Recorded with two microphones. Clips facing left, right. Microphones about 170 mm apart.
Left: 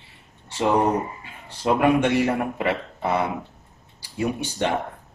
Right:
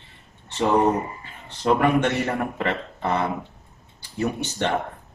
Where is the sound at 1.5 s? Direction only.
10° left (ahead or behind).